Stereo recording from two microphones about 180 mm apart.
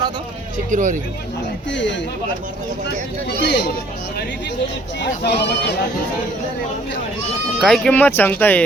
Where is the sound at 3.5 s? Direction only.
60° left (ahead or behind).